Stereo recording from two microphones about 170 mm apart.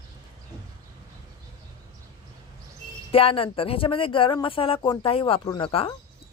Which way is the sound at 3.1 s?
35° left (ahead or behind).